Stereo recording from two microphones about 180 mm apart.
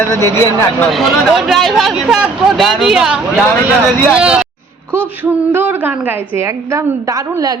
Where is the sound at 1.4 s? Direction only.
Centre (ahead or behind).